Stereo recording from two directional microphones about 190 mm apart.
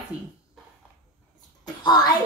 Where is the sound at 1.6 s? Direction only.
20° left (ahead or behind).